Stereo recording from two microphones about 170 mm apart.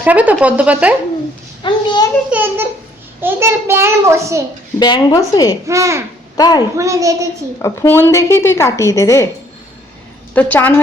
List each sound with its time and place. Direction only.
0.0 s a child's voice: 10° right (ahead or behind)
1.6 s a child's voice: 25° left (ahead or behind)
2.3 s a child's voice: 10° right (ahead or behind)
4.8 s a woman's voice: 25° left (ahead or behind)
5.6 s a child's voice: 20° right (ahead or behind)
6.3 s a child's voice: 25° left (ahead or behind)
6.7 s a child's voice: 20° right (ahead or behind)
7.6 s a woman's voice: 15° left (ahead or behind)
10.3 s a woman's voice: 10° left (ahead or behind)